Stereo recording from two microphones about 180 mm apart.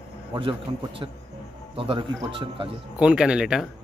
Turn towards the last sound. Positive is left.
turn(degrees=-5)  # may be behind; listen again after turning